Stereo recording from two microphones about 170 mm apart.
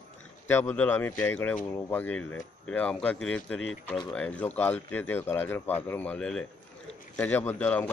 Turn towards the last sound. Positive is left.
turn(degrees=10)  # may be behind; listen again after turning